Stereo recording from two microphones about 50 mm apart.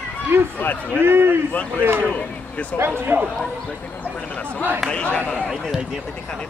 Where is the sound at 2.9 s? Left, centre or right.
Right.